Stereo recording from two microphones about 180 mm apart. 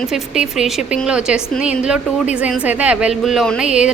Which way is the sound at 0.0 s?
Centre (ahead or behind).